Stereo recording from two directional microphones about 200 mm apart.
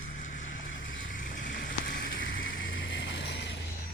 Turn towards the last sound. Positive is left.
turn(degrees=60)  # may be behind; listen again after turning